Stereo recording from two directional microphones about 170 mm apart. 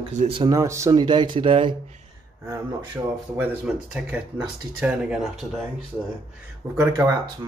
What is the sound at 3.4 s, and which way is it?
Speech, 10° right (ahead or behind).